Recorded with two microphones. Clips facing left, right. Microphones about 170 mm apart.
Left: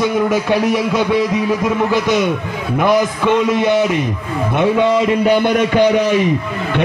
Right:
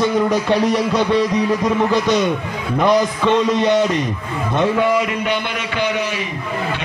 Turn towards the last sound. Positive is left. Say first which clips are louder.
# left 9 dB
turn(degrees=45)  # may be behind; listen again after turning